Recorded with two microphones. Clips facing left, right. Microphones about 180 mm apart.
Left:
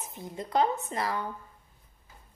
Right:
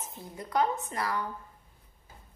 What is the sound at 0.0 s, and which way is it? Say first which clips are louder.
A woman's voice: left 3 dB; 15° left (ahead or behind).